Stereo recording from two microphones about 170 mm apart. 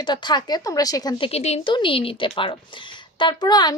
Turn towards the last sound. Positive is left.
turn(degrees=25)  # may be behind; listen again after turning